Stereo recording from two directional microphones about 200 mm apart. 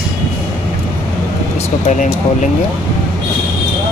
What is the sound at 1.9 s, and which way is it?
Speech, 40° left (ahead or behind).